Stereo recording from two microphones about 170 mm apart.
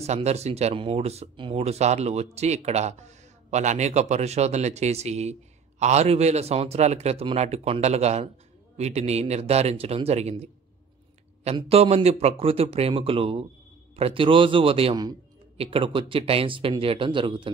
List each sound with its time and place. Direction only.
0.0 s speech: 40° right (ahead or behind)
11.5 s a man's voice: 35° right (ahead or behind)